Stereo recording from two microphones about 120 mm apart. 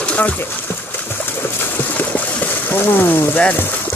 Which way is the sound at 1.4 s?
15° left (ahead or behind).